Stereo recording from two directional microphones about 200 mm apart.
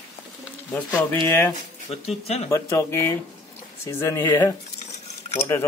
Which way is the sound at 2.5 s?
15° left (ahead or behind).